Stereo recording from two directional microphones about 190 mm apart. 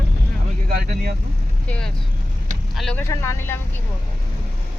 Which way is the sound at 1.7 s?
5° left (ahead or behind).